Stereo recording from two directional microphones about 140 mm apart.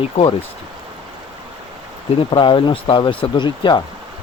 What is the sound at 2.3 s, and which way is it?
Speech, 35° left (ahead or behind).